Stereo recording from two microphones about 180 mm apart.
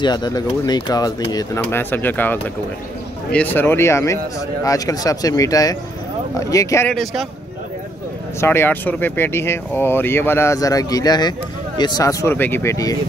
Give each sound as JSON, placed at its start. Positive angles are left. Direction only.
{"t": 0.0, "sound": "speech", "side_deg": 25}
{"t": 1.6, "sound": "speech", "side_deg": 10}
{"t": 6.9, "sound": "speech", "side_deg": 0}
{"t": 8.4, "sound": "speech", "side_deg": 10}